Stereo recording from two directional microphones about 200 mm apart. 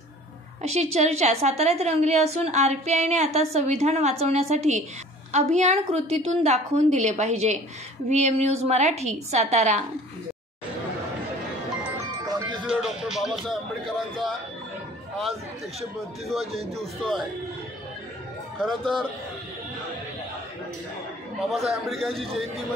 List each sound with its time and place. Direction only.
0.6 s a woman's voice: 35° right (ahead or behind)
12.3 s music: 20° right (ahead or behind)
12.6 s music: centre (ahead or behind)
15.8 s speech: centre (ahead or behind)
18.6 s speech: 5° left (ahead or behind)
21.5 s speech: centre (ahead or behind)
22.1 s a man's voice: 30° right (ahead or behind)